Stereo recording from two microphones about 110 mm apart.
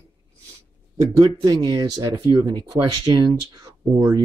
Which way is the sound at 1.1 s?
45° right (ahead or behind).